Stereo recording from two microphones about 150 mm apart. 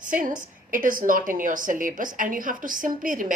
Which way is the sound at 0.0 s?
60° right (ahead or behind).